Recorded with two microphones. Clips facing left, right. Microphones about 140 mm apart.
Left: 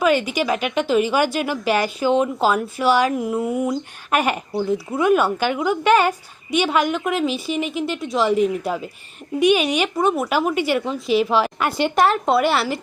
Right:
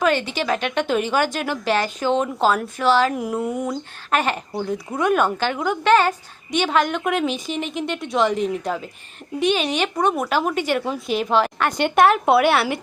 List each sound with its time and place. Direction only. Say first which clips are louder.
0.0 s a woman's voice: left 2 dB; 10° left (ahead or behind)
3.2 s a woman's voice: left 2 dB; centre (ahead or behind)